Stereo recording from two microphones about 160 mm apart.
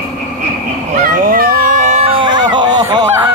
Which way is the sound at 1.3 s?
65° right (ahead or behind).